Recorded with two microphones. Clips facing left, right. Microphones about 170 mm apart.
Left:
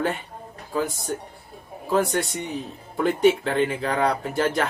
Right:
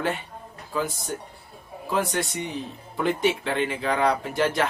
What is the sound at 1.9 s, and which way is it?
Speech, 40° left (ahead or behind).